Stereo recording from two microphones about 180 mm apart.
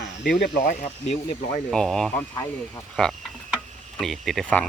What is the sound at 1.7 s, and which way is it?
Mantra, 5° left (ahead or behind).